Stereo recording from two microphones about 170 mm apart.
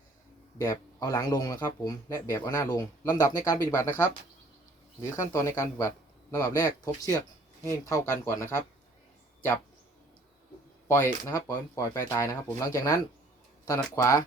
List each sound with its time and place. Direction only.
0.6 s speech: 20° left (ahead or behind)
10.8 s speech: 15° left (ahead or behind)